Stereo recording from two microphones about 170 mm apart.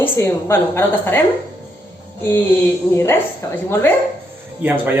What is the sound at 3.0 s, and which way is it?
Speech, 15° left (ahead or behind).